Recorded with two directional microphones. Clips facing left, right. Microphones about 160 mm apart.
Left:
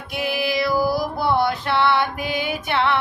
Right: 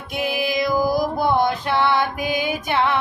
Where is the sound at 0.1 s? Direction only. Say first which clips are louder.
Even; 15° right (ahead or behind).